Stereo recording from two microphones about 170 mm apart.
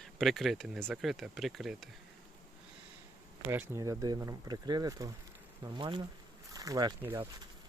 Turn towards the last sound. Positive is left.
turn(degrees=-15)  # may be behind; listen again after turning